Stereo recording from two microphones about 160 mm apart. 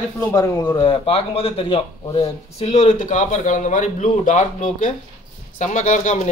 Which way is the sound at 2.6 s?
45° left (ahead or behind).